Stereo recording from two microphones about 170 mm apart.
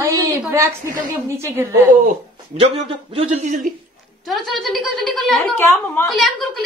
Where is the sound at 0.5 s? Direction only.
15° right (ahead or behind).